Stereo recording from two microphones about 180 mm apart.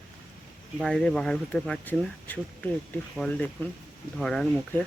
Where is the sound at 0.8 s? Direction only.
Centre (ahead or behind).